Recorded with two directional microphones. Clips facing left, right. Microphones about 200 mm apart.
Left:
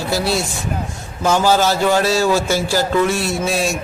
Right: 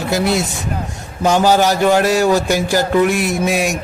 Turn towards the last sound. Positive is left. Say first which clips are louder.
# right 2 dB
turn(degrees=-15)  # may be behind; listen again after turning